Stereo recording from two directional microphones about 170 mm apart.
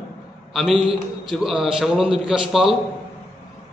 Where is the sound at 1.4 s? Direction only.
Centre (ahead or behind).